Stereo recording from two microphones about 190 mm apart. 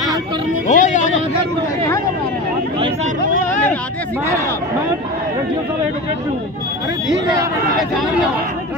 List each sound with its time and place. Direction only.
0.7 s music: 40° left (ahead or behind)